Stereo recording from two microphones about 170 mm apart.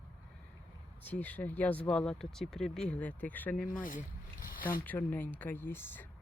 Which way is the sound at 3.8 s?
55° left (ahead or behind).